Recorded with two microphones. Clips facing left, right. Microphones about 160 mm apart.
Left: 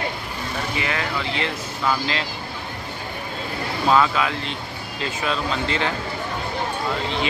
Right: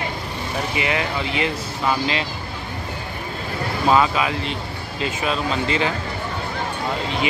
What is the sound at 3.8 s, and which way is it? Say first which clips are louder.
Speech: right 1 dB; 10° right (ahead or behind).